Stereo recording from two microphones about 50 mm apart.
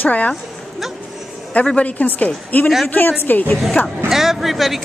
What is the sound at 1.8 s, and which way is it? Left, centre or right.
A woman's voice, left.